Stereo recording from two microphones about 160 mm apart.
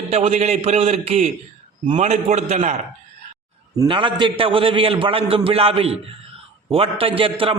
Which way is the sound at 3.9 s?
30° right (ahead or behind).